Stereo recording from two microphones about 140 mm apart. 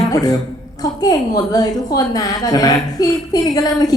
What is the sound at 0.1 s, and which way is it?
A woman's voice, 25° left (ahead or behind).